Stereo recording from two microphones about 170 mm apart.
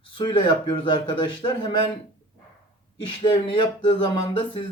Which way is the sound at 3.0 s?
30° left (ahead or behind).